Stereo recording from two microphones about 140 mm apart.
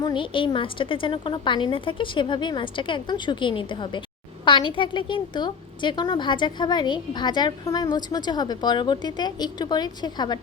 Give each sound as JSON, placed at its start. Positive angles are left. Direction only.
{"t": 0.0, "sound": "a woman's voice", "side_deg": 35}